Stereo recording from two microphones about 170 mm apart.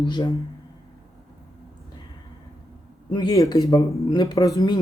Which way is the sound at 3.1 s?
25° left (ahead or behind).